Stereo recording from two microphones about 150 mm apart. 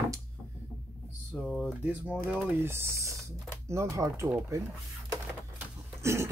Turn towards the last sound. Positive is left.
turn(degrees=-15)  # may be behind; listen again after turning